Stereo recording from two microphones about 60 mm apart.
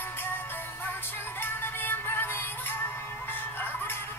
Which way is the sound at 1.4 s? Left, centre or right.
Left.